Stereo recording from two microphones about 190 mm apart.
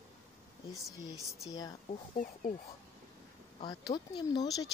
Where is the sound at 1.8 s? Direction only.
40° left (ahead or behind).